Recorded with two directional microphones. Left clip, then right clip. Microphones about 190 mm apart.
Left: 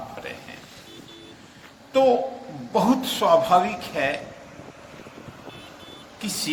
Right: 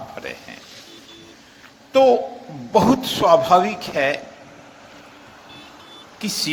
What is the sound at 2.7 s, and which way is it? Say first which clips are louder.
A woman's voice: right 5 dB; 30° right (ahead or behind).